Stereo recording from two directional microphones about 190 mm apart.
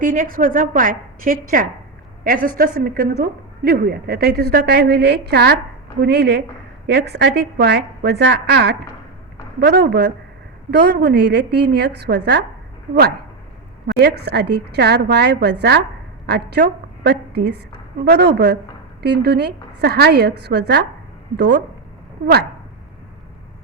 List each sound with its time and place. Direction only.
0.0 s a woman's voice: 45° right (ahead or behind)
13.8 s a woman's voice: 60° right (ahead or behind)